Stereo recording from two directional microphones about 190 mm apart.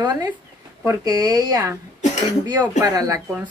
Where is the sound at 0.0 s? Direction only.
20° right (ahead or behind).